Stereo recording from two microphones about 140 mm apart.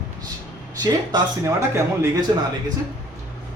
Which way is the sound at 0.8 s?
25° right (ahead or behind).